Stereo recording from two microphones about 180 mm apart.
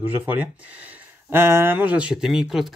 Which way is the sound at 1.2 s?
15° right (ahead or behind).